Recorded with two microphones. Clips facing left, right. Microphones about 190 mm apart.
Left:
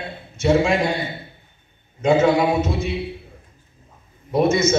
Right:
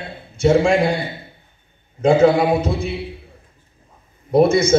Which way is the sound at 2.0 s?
30° right (ahead or behind).